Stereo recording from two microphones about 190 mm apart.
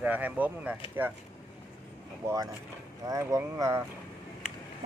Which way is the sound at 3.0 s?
15° right (ahead or behind).